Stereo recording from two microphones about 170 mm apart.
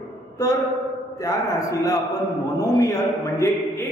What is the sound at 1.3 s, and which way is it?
Music, 20° left (ahead or behind).